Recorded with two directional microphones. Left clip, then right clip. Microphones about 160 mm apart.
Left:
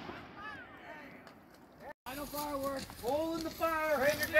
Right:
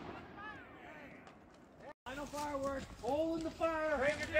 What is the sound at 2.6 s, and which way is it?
Speech, 25° left (ahead or behind).